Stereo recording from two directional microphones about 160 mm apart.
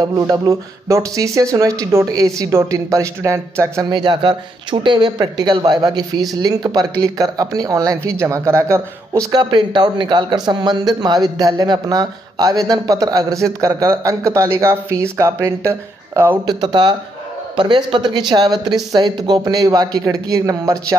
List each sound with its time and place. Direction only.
0.0 s speech: 25° right (ahead or behind)
3.9 s speech: 30° right (ahead or behind)
16.4 s speech: 30° right (ahead or behind)